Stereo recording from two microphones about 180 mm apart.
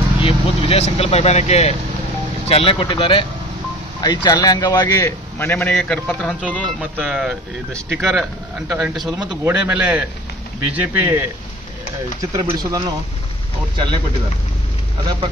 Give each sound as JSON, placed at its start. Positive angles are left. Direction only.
{"t": 0.2, "sound": "a man's voice", "side_deg": 30}
{"t": 12.2, "sound": "speech", "side_deg": -20}